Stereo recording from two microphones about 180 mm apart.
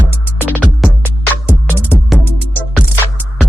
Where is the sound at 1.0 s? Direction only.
10° right (ahead or behind).